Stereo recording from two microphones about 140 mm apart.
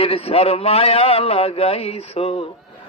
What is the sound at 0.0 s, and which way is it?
A man's voice, 45° left (ahead or behind).